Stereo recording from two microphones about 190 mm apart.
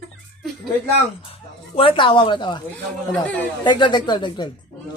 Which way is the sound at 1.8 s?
25° left (ahead or behind).